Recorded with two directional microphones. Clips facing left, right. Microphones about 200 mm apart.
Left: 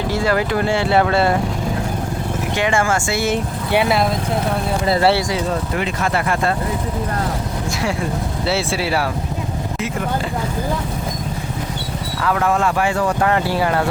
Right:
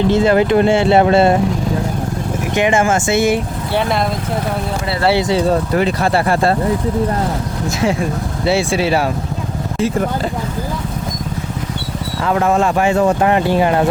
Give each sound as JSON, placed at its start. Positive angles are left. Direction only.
{"t": 0.1, "sound": "speech", "side_deg": -20}
{"t": 2.6, "sound": "speech", "side_deg": -20}
{"t": 3.7, "sound": "speech", "side_deg": 10}
{"t": 5.3, "sound": "speech", "side_deg": -35}
{"t": 8.4, "sound": "speech", "side_deg": -15}
{"t": 12.2, "sound": "speech", "side_deg": -25}